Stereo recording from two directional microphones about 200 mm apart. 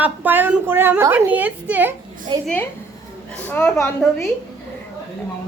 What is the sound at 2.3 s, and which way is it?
Speech, 20° right (ahead or behind).